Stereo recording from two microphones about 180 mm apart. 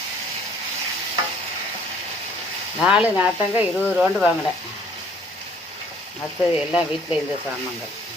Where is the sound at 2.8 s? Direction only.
5° right (ahead or behind).